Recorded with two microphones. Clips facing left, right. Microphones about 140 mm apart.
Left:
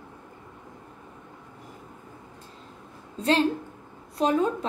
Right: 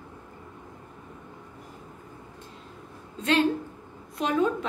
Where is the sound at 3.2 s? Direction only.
35° left (ahead or behind).